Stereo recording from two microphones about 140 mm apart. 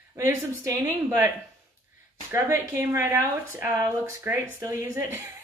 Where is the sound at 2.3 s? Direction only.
15° right (ahead or behind).